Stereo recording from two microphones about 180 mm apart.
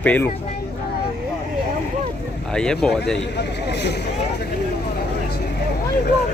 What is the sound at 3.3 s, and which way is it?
Speech, 65° left (ahead or behind).